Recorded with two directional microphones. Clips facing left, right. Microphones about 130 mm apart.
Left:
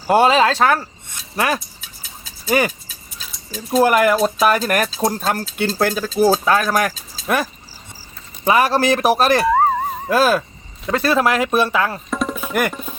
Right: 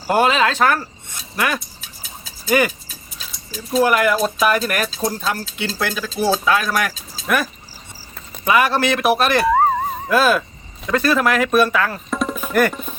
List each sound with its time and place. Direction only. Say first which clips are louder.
0.1 s speech: left 3 dB; 30° left (ahead or behind)
1.5 s a sound: even; centre (ahead or behind)
2.5 s speech: right 1 dB; 30° left (ahead or behind)
3.7 s speech: left 2 dB; 45° left (ahead or behind)
5.0 s speech: left 3 dB; 50° left (ahead or behind); by 7.4 s 30° left (ahead or behind)
8.4 s speech: left 2 dB; 35° left (ahead or behind)
9.4 s chink: even; centre (ahead or behind)
10.1 s speech: even; 35° left (ahead or behind)
10.8 s speech: even; 25° left (ahead or behind)
12.1 s music: right 4 dB; centre (ahead or behind)